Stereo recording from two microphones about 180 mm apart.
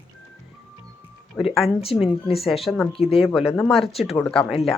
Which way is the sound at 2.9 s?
30° left (ahead or behind).